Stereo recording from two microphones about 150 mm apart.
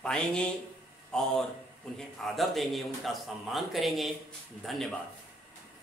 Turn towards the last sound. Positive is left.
turn(degrees=0)  # may be behind; listen again after turning